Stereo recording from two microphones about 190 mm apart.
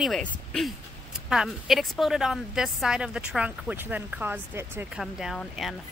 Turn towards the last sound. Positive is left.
turn(degrees=0)  # may be behind; listen again after turning